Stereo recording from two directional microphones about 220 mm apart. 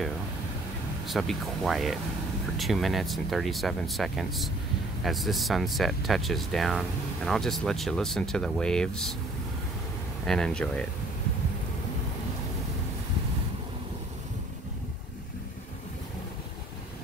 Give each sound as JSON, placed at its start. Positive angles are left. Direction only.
{"t": 1.0, "sound": "speech", "side_deg": 0}
{"t": 10.2, "sound": "speech", "side_deg": 5}